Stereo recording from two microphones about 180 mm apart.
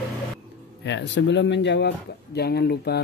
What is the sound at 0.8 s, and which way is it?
Speech, 80° left.